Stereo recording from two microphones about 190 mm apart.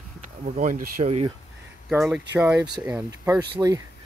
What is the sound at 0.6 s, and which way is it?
Speech, 40° right (ahead or behind).